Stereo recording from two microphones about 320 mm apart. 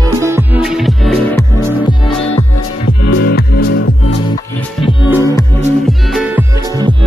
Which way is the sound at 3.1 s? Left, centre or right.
Left.